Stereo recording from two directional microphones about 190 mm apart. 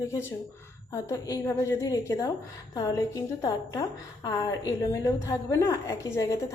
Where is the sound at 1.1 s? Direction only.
15° left (ahead or behind).